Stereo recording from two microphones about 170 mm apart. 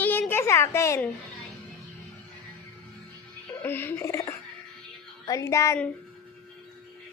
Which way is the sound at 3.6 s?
10° left (ahead or behind).